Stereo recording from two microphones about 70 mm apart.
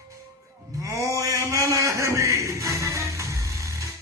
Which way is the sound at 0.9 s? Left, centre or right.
Right.